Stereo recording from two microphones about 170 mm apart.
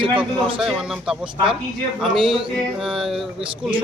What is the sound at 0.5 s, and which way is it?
Speech, 5° right (ahead or behind).